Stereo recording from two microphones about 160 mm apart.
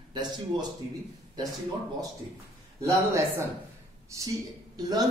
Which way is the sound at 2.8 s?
20° right (ahead or behind).